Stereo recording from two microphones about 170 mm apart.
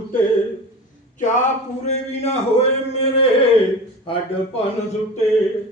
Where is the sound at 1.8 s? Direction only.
40° left (ahead or behind).